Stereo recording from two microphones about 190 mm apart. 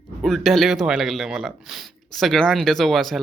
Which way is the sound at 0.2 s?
Centre (ahead or behind).